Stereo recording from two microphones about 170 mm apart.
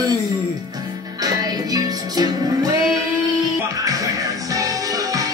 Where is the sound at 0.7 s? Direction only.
20° right (ahead or behind).